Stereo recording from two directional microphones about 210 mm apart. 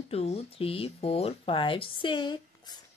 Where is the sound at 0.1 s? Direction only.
30° left (ahead or behind).